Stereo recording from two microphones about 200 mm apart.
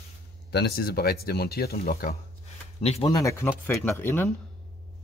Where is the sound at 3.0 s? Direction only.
15° left (ahead or behind).